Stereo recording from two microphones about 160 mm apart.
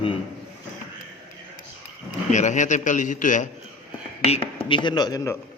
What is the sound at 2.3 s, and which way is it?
A man's voice, 50° left (ahead or behind).